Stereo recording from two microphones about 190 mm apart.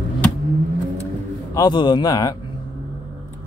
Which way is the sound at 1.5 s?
25° left (ahead or behind).